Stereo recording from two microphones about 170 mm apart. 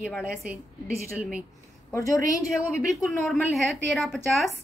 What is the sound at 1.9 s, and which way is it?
Speech, 20° left (ahead or behind).